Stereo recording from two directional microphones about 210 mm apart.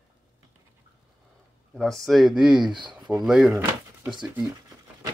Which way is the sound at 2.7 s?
20° right (ahead or behind).